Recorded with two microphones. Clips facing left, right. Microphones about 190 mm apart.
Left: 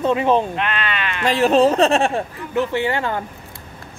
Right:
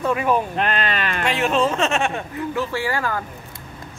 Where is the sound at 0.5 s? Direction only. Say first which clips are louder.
Right 1 dB; 40° right (ahead or behind).